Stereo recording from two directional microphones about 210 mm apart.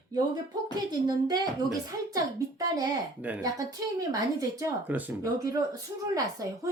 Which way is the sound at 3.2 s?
5° right (ahead or behind).